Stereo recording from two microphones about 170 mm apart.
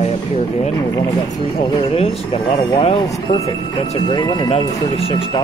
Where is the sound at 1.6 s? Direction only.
30° left (ahead or behind).